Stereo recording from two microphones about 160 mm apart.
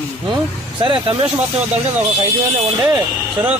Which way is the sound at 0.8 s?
35° right (ahead or behind).